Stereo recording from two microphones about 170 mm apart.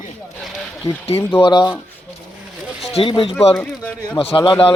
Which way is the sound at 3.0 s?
30° left (ahead or behind).